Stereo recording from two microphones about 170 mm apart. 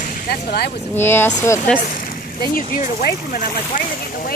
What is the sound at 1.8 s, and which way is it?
Speech, 55° left (ahead or behind).